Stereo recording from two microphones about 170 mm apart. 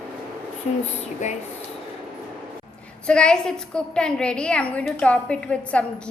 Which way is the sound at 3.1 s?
5° left (ahead or behind).